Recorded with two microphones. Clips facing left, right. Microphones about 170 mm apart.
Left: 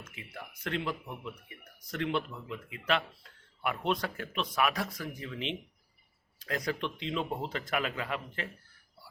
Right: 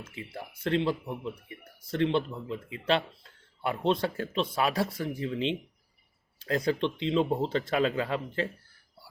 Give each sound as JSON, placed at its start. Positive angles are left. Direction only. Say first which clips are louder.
{"t": 0.0, "sound": "speech", "louder": "right 5 dB", "side_deg": -30}